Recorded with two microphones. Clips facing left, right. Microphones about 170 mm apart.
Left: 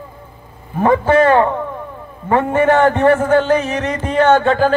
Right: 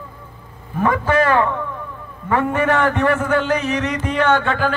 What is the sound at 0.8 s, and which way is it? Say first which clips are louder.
A man's voice: left 5 dB; 30° left (ahead or behind).